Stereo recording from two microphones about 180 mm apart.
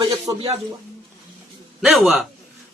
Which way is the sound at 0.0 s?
30° right (ahead or behind).